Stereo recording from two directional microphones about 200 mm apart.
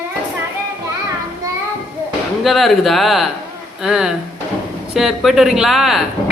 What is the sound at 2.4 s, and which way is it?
Speech, centre (ahead or behind).